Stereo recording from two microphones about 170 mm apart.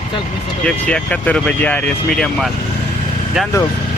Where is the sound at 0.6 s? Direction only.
5° left (ahead or behind).